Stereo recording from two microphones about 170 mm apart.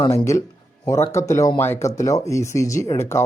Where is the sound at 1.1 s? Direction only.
20° left (ahead or behind).